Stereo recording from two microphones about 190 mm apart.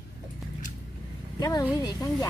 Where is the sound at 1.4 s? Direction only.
20° left (ahead or behind).